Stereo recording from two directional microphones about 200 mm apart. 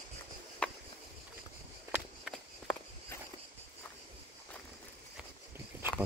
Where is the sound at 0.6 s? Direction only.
5° left (ahead or behind).